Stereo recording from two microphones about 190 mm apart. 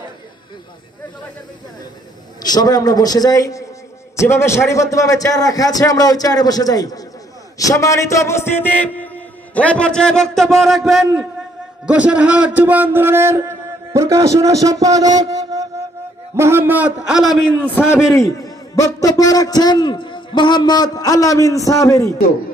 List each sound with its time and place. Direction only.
2.4 s a man's voice: 20° left (ahead or behind); by 17.6 s centre (ahead or behind)
18.2 s a man's voice: 15° left (ahead or behind)